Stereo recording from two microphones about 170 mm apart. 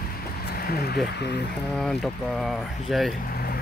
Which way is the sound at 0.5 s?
65° left (ahead or behind).